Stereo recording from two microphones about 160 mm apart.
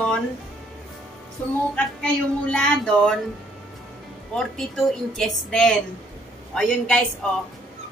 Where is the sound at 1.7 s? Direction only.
5° left (ahead or behind).